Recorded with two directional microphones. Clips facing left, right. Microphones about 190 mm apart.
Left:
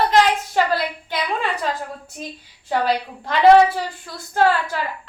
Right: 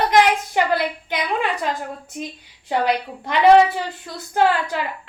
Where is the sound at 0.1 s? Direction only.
15° right (ahead or behind).